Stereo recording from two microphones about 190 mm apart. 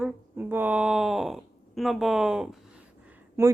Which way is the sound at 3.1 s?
15° right (ahead or behind).